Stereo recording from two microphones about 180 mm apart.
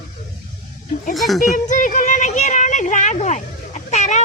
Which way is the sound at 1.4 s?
45° left (ahead or behind).